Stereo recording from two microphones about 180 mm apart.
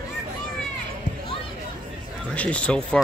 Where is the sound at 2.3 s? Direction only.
10° left (ahead or behind).